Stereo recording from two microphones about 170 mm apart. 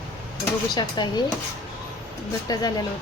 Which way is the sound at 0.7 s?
25° left (ahead or behind).